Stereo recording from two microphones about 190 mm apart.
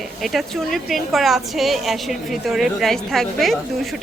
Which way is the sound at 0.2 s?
Centre (ahead or behind).